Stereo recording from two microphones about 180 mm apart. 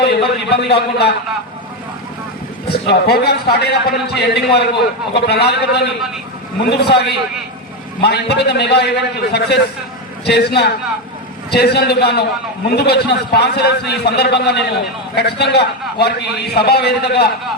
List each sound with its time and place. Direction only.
0.0 s speech: 70° left (ahead or behind)
2.6 s a man's voice: 65° left (ahead or behind)